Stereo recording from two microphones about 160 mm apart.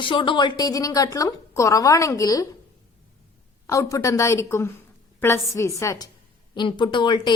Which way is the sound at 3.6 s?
20° left (ahead or behind).